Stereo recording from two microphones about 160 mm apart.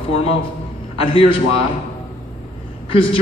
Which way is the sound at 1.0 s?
35° left (ahead or behind).